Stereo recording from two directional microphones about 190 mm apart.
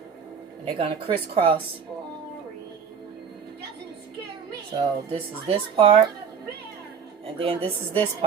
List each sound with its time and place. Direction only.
0.6 s speech: 30° right (ahead or behind)
4.8 s speech: 30° right (ahead or behind)
7.3 s speech: 30° right (ahead or behind)